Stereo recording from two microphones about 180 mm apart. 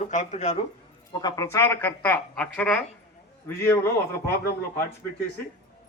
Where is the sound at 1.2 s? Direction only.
15° left (ahead or behind).